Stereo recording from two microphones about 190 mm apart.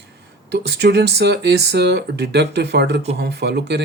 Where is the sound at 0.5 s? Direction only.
60° right (ahead or behind).